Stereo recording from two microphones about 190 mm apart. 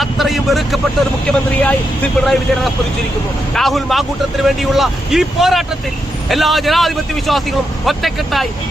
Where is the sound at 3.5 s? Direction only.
Centre (ahead or behind).